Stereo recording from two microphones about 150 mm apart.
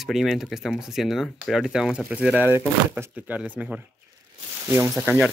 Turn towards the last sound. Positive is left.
turn(degrees=-10)  # may be behind; listen again after turning